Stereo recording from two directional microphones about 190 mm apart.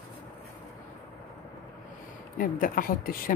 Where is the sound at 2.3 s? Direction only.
50° left (ahead or behind).